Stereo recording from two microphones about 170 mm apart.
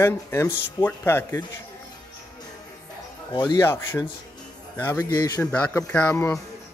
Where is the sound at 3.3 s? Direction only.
25° left (ahead or behind).